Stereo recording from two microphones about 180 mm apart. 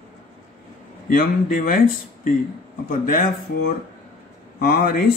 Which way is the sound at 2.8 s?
50° left (ahead or behind).